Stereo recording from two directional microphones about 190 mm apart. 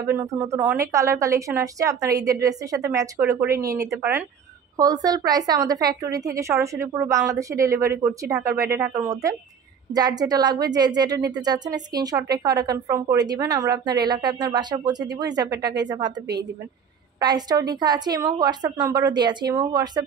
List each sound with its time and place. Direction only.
0.0 s a woman's voice: 15° right (ahead or behind)
15.5 s speech: 65° right (ahead or behind)
15.8 s a woman's voice: 20° right (ahead or behind)
17.2 s a woman's voice: 20° right (ahead or behind)